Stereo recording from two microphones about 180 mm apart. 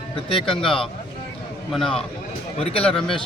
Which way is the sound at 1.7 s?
Centre (ahead or behind).